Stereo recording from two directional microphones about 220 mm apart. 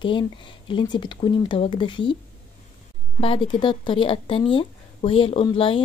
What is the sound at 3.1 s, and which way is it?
Speech, 25° left (ahead or behind).